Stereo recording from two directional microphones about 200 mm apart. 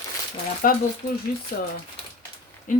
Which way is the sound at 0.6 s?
45° left (ahead or behind).